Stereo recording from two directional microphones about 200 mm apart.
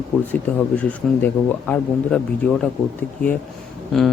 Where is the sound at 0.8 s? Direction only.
10° left (ahead or behind).